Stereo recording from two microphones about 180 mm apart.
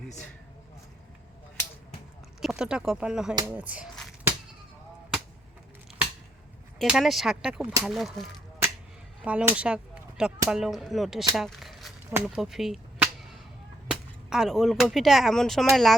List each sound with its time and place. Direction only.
2.4 s speech: 5° right (ahead or behind)
6.7 s speech: centre (ahead or behind)
9.2 s speech: 5° right (ahead or behind)
11.3 s a sound: centre (ahead or behind)
12.1 s whip: 5° right (ahead or behind)
13.8 s speech: 5° right (ahead or behind)